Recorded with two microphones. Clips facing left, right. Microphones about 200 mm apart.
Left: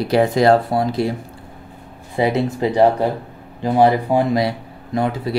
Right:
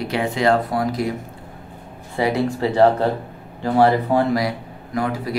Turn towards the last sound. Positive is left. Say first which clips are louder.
# left 3 dB
turn(degrees=25)  # may be behind; listen again after turning